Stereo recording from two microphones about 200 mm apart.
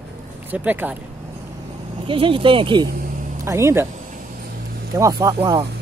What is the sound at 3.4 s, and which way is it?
Speech, 15° right (ahead or behind).